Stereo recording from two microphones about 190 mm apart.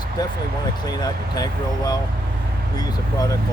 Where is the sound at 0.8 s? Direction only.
20° left (ahead or behind).